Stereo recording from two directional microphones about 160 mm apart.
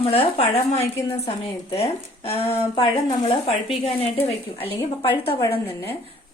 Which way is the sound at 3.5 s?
Centre (ahead or behind).